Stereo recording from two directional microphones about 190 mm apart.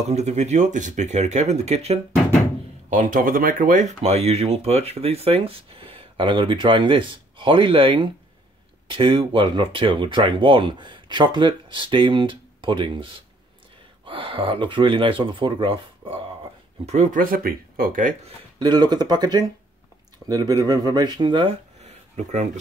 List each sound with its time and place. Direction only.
0.0 s speech: 35° right (ahead or behind)
18.2 s speech: 25° right (ahead or behind)
21.8 s a sound: 35° right (ahead or behind)